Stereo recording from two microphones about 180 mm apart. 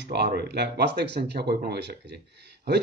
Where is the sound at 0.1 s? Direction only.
65° right (ahead or behind).